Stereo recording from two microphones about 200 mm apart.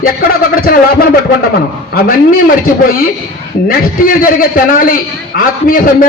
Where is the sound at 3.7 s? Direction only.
45° left (ahead or behind).